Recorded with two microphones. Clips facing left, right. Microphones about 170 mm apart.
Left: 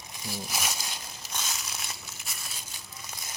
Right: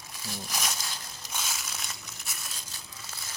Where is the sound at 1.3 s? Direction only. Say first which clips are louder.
Even; 5° right (ahead or behind).